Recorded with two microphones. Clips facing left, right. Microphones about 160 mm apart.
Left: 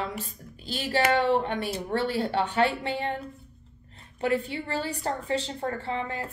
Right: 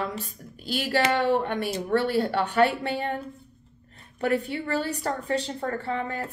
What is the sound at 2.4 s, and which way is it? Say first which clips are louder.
Speech: right 1 dB; 45° right (ahead or behind).